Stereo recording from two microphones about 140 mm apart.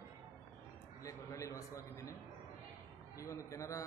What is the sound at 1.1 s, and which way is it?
A man's voice, 25° left (ahead or behind).